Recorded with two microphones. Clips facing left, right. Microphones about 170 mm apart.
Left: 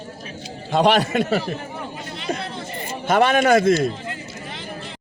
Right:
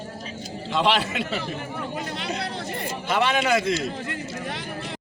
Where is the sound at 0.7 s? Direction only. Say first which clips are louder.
Left 6 dB; 45° left (ahead or behind).